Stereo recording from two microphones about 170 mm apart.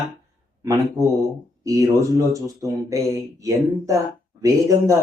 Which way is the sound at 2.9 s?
20° right (ahead or behind).